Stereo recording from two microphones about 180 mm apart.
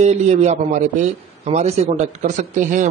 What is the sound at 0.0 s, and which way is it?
A man's voice, 40° right (ahead or behind).